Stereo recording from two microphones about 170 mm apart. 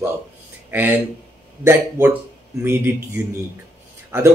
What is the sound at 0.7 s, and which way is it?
Speech, 10° right (ahead or behind).